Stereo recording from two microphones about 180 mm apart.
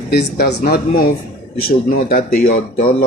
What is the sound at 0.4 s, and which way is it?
Speech, 60° left (ahead or behind).